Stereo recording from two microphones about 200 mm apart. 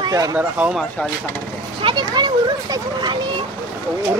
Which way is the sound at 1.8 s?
25° right (ahead or behind).